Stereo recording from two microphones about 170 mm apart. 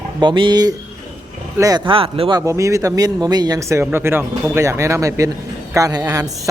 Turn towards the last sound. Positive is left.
turn(degrees=-20)  # may be behind; listen again after turning